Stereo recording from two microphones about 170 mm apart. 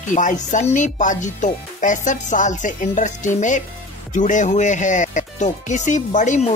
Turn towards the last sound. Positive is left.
turn(degrees=45)  # may be behind; listen again after turning